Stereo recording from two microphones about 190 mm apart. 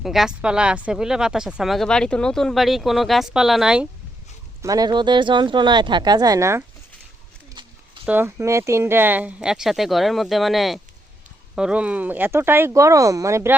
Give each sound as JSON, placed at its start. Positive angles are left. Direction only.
{"t": 0.0, "sound": "speech", "side_deg": 0}
{"t": 4.6, "sound": "speech", "side_deg": -20}
{"t": 7.6, "sound": "a sound", "side_deg": -25}
{"t": 8.0, "sound": "speech", "side_deg": -10}